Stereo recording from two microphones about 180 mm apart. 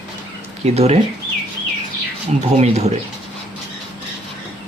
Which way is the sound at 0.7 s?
35° right (ahead or behind).